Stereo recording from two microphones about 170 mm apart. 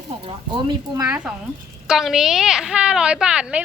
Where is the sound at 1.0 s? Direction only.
10° right (ahead or behind).